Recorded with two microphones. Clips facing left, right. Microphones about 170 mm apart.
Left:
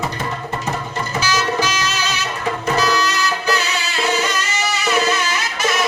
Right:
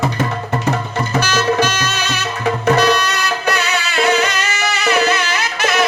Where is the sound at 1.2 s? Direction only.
60° right (ahead or behind).